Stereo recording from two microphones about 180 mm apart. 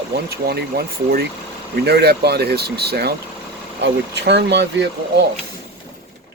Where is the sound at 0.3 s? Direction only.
60° right (ahead or behind).